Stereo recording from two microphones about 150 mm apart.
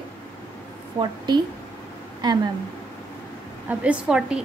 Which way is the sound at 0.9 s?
30° right (ahead or behind).